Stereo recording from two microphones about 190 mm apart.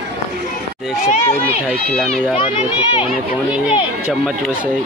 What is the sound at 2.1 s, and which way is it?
Speech, 30° left (ahead or behind).